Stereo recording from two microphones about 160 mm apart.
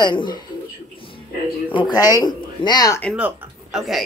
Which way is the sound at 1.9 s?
25° left (ahead or behind).